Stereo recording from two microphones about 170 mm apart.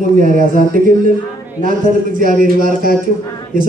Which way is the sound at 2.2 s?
55° right (ahead or behind).